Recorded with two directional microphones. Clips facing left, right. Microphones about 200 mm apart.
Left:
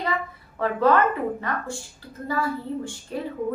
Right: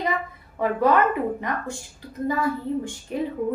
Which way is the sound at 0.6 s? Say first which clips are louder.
Even; 15° right (ahead or behind).